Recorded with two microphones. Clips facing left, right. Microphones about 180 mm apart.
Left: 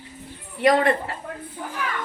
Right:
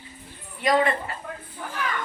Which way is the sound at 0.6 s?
65° left (ahead or behind).